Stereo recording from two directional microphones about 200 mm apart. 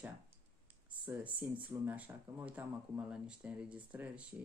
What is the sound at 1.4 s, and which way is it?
Speech, 10° right (ahead or behind).